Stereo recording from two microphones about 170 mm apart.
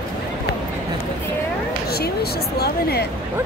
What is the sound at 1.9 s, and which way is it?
Speech, 70° left (ahead or behind).